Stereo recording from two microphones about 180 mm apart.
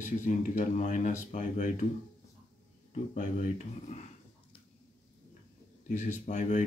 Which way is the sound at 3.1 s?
45° left (ahead or behind).